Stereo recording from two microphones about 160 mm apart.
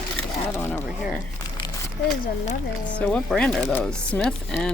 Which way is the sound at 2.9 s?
10° left (ahead or behind).